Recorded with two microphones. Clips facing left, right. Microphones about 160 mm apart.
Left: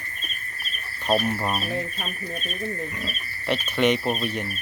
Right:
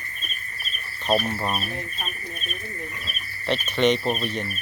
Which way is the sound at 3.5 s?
10° left (ahead or behind).